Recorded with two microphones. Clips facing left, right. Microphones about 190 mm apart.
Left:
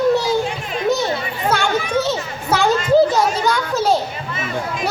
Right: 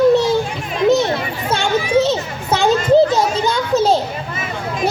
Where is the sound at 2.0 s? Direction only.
25° right (ahead or behind).